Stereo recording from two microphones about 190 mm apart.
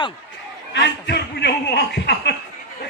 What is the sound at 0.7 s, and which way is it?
Speech, 65° left (ahead or behind).